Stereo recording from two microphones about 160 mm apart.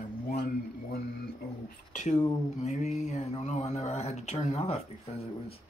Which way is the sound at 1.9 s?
50° left (ahead or behind).